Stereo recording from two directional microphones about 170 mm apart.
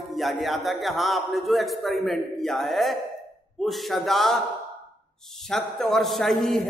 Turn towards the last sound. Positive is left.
turn(degrees=0)  # may be behind; listen again after turning